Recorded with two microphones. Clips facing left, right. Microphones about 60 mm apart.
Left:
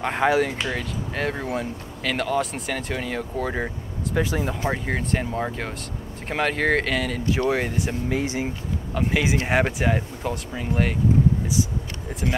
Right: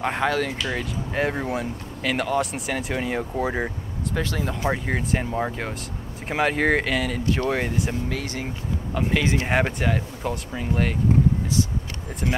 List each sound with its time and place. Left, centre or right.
0.2 s speech: centre
0.7 s speech: centre
4.1 s speech: centre
4.6 s speech: centre
8.1 s speech: centre
8.9 s speech: centre
12.2 s speech: centre